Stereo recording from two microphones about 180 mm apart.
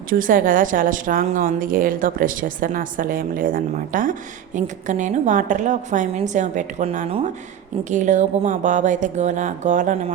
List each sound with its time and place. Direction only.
0.1 s speech: 50° right (ahead or behind)